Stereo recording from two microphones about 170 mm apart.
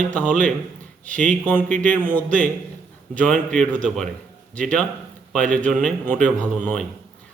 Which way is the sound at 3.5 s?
5° left (ahead or behind).